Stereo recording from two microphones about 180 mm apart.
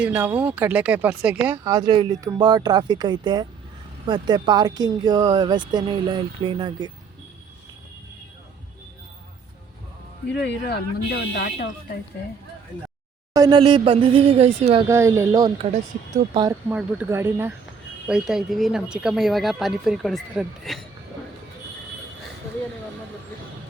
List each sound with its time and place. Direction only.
0.0 s speech: 10° right (ahead or behind)
1.6 s speech: 20° right (ahead or behind)
10.4 s speech: 65° left (ahead or behind)
13.3 s speech: 20° right (ahead or behind)
13.6 s speech: 30° right (ahead or behind)
14.8 s speech: 15° right (ahead or behind)
16.6 s speech: 10° right (ahead or behind)